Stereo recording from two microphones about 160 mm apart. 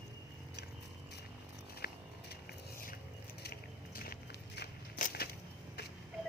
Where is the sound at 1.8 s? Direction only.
70° left (ahead or behind).